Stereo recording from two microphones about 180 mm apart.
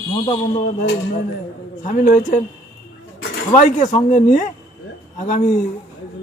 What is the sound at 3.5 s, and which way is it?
Speech, 45° left (ahead or behind).